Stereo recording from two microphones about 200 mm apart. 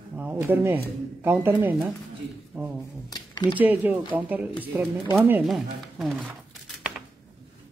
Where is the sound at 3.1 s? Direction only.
25° left (ahead or behind).